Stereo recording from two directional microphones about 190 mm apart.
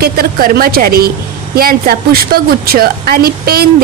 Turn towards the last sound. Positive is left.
turn(degrees=-55)  # may be behind; listen again after turning